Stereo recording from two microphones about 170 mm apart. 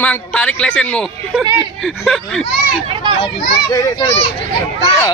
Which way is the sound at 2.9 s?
30° right (ahead or behind).